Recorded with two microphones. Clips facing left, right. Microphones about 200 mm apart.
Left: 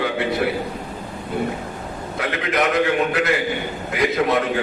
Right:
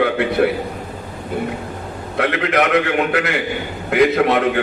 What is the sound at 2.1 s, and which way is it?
A man's voice, 65° right (ahead or behind).